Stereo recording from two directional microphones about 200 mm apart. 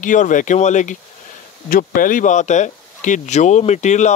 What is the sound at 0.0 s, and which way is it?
Speech, 40° left (ahead or behind).